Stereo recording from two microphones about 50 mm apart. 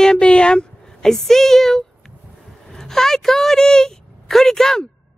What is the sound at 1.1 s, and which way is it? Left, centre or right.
A woman's voice, centre.